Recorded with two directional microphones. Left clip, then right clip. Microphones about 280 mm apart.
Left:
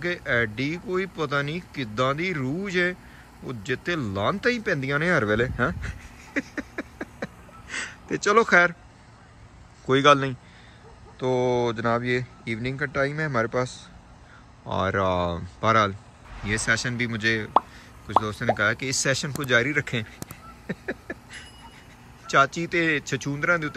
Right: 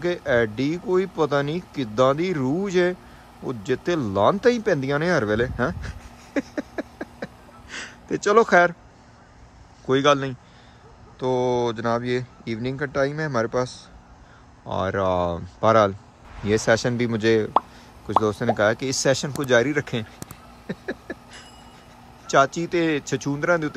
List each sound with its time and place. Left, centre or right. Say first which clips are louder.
0.0 s speech: right 3 dB; centre
9.8 s speech: left 1 dB; centre
20.2 s a sound: even; centre
22.2 s speech: right 2 dB; centre